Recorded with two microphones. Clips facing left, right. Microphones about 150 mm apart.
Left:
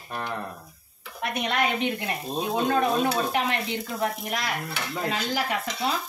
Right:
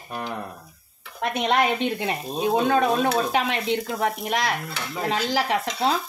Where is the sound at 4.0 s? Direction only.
90° right.